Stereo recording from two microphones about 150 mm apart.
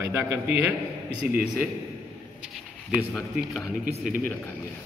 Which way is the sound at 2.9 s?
Centre (ahead or behind).